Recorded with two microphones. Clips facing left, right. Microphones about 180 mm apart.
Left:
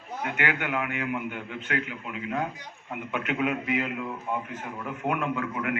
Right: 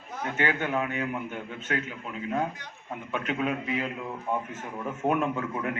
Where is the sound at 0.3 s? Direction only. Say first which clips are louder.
Right 2 dB; 25° right (ahead or behind).